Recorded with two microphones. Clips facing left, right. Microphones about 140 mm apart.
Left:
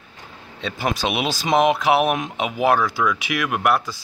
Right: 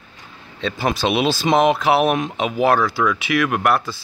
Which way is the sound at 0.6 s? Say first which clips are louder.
Right 3 dB; 10° left (ahead or behind).